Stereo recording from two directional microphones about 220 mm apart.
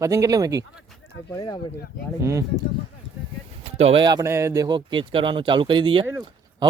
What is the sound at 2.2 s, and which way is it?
Speech, 15° right (ahead or behind).